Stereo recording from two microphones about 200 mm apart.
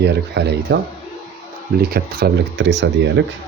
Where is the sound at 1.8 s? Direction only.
50° right (ahead or behind).